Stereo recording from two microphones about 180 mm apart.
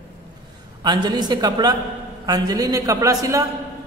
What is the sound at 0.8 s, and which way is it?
A man's voice, 25° right (ahead or behind).